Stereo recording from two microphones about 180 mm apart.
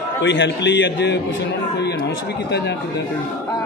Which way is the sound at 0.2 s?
75° left (ahead or behind).